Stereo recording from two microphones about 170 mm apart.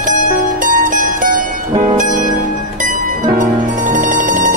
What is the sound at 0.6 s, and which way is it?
Music, 50° right (ahead or behind).